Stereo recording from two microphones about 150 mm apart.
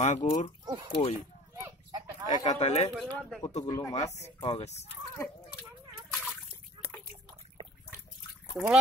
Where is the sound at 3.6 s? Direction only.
25° left (ahead or behind).